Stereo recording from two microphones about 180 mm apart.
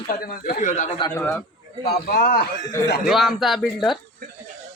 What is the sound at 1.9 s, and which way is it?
Speech, 55° left (ahead or behind).